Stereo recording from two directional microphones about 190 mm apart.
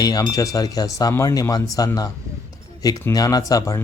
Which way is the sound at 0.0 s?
20° left (ahead or behind).